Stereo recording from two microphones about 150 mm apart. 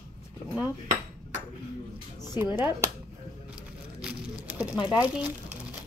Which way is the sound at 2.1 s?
20° right (ahead or behind).